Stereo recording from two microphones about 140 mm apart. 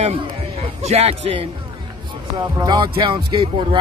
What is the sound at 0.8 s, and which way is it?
Speech, 45° right (ahead or behind).